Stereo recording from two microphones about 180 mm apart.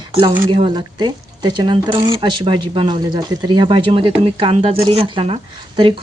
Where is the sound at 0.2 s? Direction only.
30° right (ahead or behind).